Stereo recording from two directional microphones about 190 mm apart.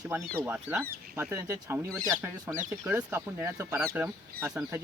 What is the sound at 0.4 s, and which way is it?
Speech, 10° right (ahead or behind).